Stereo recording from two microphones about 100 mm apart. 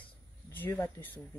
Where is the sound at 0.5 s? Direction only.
25° left (ahead or behind).